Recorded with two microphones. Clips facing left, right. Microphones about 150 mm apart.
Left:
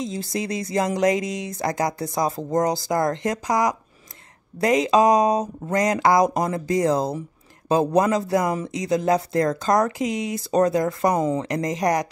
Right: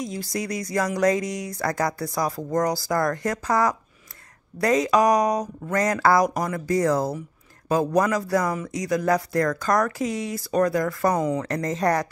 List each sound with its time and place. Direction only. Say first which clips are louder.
0.0 s speech: left 2 dB; 25° left (ahead or behind)